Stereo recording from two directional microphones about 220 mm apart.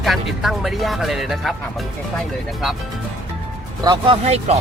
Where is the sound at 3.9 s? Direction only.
25° right (ahead or behind).